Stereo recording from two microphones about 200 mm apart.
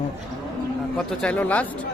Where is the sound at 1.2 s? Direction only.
5° left (ahead or behind).